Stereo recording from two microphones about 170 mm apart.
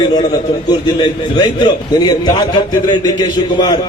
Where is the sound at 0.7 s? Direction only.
25° left (ahead or behind).